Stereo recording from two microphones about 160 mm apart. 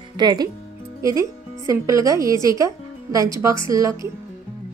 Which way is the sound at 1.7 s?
20° right (ahead or behind).